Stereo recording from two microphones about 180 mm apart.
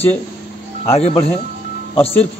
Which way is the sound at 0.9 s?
35° left (ahead or behind).